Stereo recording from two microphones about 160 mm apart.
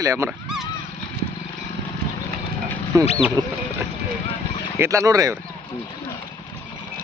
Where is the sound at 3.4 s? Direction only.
25° right (ahead or behind).